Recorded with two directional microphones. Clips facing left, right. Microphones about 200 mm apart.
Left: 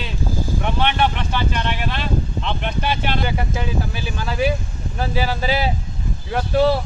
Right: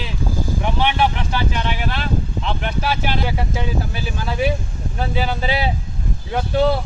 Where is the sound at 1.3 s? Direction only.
10° right (ahead or behind).